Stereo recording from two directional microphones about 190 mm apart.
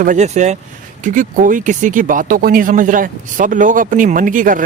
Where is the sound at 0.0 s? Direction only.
40° right (ahead or behind).